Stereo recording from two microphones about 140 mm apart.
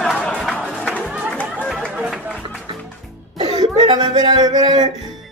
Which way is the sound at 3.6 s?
30° right (ahead or behind).